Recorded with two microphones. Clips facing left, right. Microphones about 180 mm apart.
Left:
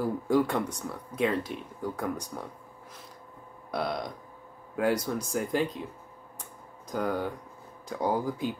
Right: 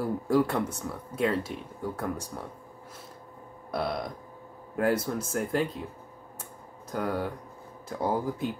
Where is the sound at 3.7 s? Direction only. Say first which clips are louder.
Right 1 dB; 5° right (ahead or behind).